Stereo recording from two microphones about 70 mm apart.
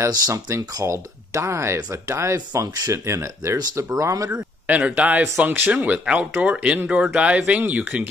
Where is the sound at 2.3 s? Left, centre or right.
Right.